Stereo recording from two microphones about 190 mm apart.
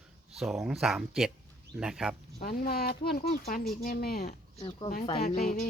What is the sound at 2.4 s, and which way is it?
Speech, 50° left (ahead or behind).